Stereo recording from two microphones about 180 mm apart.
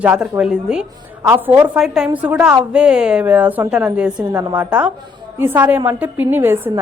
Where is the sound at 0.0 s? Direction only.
10° right (ahead or behind).